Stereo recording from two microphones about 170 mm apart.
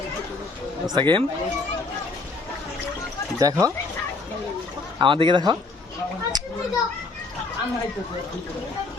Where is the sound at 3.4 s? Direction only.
20° right (ahead or behind).